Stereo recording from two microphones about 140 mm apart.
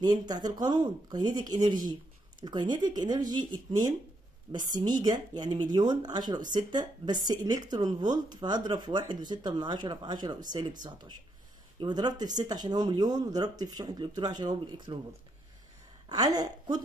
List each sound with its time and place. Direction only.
0.0 s speech: 30° right (ahead or behind)
16.1 s speech: 30° right (ahead or behind)